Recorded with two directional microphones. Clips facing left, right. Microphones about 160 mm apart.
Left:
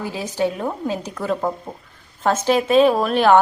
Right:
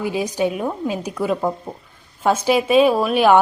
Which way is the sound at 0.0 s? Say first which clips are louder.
Right 2 dB; 15° right (ahead or behind).